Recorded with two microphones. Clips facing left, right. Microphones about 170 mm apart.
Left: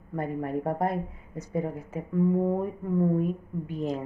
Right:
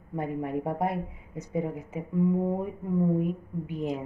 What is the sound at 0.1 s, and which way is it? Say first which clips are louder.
A woman's voice: even; 10° right (ahead or behind).